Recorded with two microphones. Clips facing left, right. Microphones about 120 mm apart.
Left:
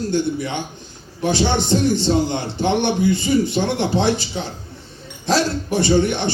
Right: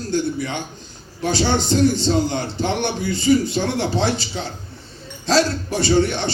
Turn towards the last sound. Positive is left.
turn(degrees=20)  # may be behind; listen again after turning